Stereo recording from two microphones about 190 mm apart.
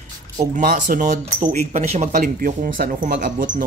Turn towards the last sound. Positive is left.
turn(degrees=-45)  # may be behind; listen again after turning